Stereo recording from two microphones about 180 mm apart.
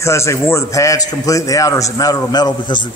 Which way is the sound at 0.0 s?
15° left (ahead or behind).